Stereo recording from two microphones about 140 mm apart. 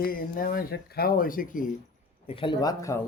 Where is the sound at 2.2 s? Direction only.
35° left (ahead or behind).